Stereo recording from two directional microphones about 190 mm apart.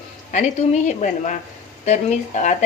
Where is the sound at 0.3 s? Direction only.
40° left (ahead or behind).